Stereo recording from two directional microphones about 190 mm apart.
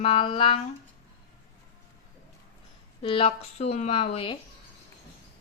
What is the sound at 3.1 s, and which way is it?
Speech, 30° left (ahead or behind).